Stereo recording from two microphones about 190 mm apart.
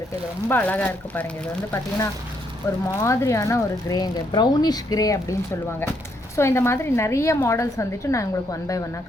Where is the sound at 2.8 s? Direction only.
15° left (ahead or behind).